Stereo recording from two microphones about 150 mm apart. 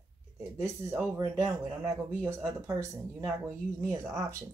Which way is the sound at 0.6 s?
20° right (ahead or behind).